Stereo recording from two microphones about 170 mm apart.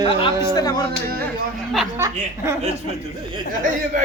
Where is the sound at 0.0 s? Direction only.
30° left (ahead or behind).